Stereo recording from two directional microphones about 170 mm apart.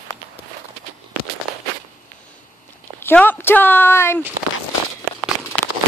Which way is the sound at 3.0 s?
10° left (ahead or behind).